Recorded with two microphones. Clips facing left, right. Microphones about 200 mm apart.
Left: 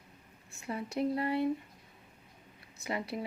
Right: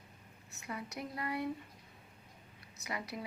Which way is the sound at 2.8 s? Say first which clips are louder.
Left 6 dB; 25° left (ahead or behind).